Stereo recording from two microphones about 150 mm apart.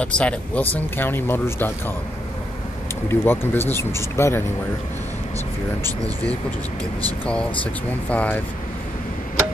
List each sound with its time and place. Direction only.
0.0 s speech: 10° left (ahead or behind)
3.1 s speech: 15° left (ahead or behind)
7.1 s speech: 5° left (ahead or behind)